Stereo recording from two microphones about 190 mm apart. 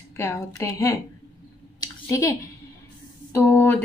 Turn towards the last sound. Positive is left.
turn(degrees=10)  # may be behind; listen again after turning